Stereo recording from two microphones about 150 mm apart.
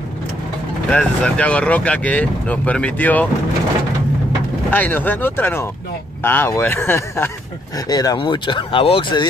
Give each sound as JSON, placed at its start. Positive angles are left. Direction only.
{"t": 0.8, "sound": "speech", "side_deg": 5}
{"t": 4.6, "sound": "speech", "side_deg": 10}